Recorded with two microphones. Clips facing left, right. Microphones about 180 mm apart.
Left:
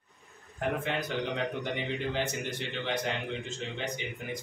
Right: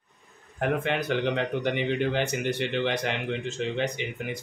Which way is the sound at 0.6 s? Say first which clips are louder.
Right 5 dB; 65° right (ahead or behind).